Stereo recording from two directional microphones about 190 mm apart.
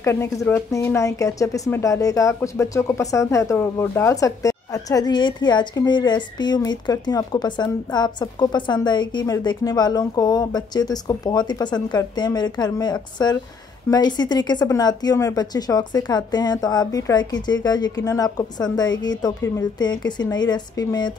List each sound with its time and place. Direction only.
0.0 s speech: 15° left (ahead or behind)